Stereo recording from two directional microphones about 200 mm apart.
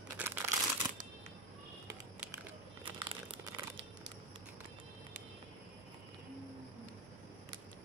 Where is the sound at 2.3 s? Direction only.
25° right (ahead or behind).